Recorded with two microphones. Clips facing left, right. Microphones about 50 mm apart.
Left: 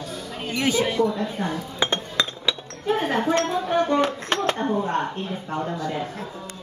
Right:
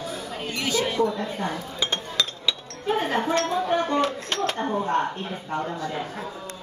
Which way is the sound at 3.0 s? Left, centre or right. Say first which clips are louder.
Left 2 dB; centre.